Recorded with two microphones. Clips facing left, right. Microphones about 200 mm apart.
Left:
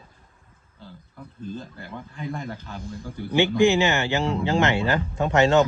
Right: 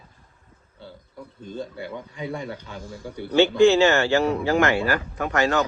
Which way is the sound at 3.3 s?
15° left (ahead or behind).